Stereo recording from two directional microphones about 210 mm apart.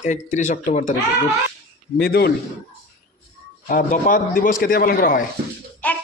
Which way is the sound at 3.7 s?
40° left (ahead or behind).